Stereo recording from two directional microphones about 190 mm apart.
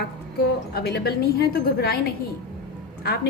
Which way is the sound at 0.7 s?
60° left (ahead or behind).